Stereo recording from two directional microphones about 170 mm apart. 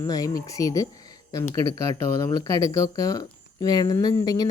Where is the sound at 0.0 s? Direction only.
20° left (ahead or behind).